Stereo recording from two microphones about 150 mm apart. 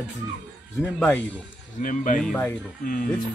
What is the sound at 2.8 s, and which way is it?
Speech, 65° left (ahead or behind).